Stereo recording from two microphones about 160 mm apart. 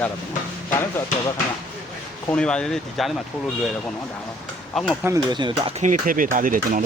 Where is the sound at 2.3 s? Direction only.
5° left (ahead or behind).